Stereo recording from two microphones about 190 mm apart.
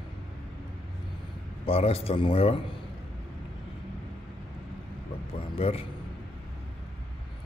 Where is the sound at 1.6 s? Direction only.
30° left (ahead or behind).